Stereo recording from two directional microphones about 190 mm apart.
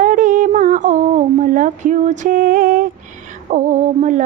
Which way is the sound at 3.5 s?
35° right (ahead or behind).